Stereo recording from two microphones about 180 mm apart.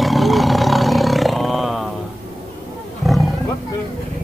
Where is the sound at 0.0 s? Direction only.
Centre (ahead or behind).